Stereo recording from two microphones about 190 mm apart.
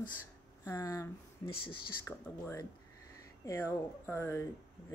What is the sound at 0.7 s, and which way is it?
Speech, 15° left (ahead or behind).